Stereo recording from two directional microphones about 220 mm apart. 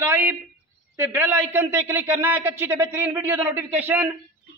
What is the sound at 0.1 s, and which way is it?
A man's voice, 10° right (ahead or behind).